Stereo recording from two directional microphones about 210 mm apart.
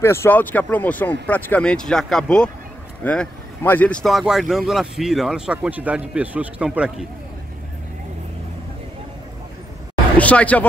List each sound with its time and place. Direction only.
0.0 s speech: 10° left (ahead or behind); by 7.1 s 5° right (ahead or behind)
10.1 s speech: 5° left (ahead or behind)